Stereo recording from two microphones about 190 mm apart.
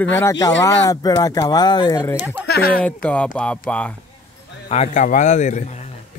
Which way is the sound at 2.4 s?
55° left (ahead or behind).